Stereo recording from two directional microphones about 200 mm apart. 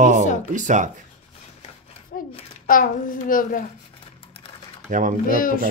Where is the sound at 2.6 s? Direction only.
45° left (ahead or behind).